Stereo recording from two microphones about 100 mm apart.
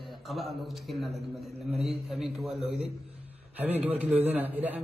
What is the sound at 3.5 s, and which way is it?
A man's voice, 15° right (ahead or behind).